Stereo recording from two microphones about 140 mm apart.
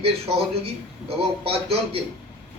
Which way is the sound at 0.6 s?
45° right (ahead or behind).